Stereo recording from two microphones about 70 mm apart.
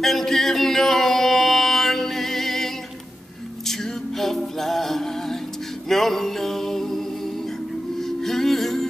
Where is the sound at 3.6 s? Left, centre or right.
Centre.